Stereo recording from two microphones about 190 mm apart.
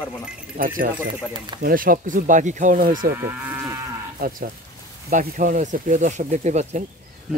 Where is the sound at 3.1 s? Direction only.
10° right (ahead or behind).